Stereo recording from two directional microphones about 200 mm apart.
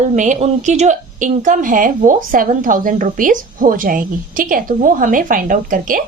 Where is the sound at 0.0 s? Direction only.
35° right (ahead or behind).